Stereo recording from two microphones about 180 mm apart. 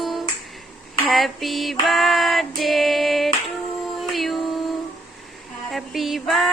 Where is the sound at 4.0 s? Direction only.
Centre (ahead or behind).